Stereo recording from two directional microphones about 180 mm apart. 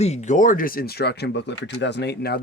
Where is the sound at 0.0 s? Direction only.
40° left (ahead or behind).